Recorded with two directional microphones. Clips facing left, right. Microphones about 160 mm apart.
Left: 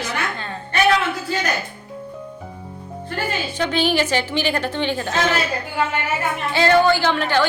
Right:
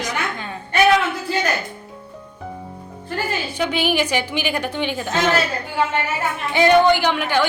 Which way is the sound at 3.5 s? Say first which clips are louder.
Left 1 dB; 10° right (ahead or behind).